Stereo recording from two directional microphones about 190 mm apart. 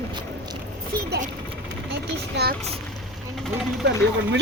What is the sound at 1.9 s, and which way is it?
Speech, 60° right (ahead or behind).